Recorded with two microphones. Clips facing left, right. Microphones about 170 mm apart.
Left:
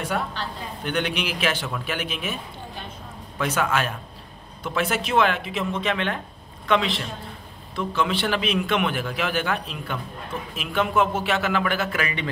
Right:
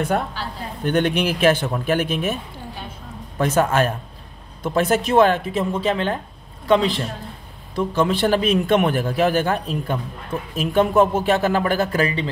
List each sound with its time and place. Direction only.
0.8 s a man's voice: 45° right (ahead or behind)
3.3 s a man's voice: 45° right (ahead or behind)